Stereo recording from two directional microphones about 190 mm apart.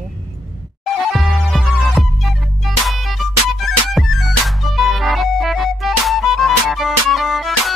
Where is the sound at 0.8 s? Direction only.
Centre (ahead or behind).